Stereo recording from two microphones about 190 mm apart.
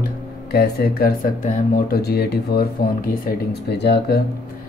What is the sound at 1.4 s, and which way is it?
Speech, 40° left (ahead or behind).